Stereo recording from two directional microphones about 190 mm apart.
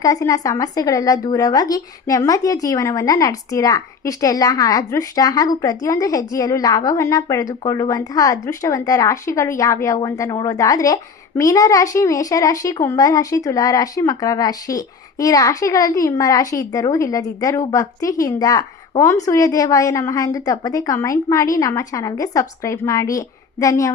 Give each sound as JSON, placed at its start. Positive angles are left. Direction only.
{"t": 0.0, "sound": "speech", "side_deg": 20}